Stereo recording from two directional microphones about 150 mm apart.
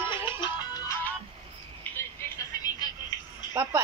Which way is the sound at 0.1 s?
30° left (ahead or behind).